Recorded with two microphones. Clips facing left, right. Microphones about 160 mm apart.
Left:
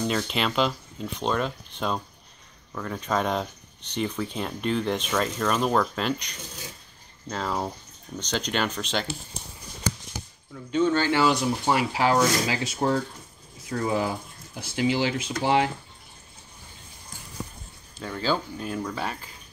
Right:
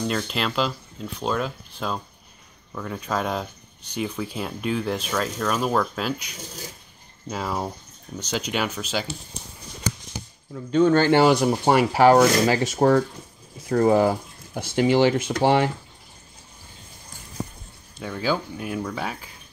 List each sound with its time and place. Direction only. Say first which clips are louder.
0.0 s speech: even; centre (ahead or behind)
10.5 s speech: right 5 dB; 45° right (ahead or behind)
10.9 s speech: right 6 dB; 60° right (ahead or behind)
17.9 s speech: right 2 dB; 5° right (ahead or behind)